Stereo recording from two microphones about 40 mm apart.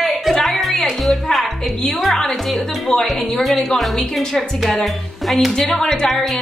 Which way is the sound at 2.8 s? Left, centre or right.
Centre.